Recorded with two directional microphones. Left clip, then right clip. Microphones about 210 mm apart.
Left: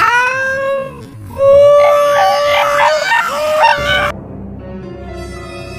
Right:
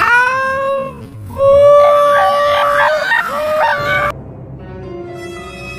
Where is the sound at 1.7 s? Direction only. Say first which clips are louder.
Even; 25° left (ahead or behind).